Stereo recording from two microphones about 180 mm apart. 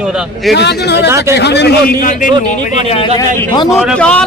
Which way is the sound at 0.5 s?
70° left (ahead or behind).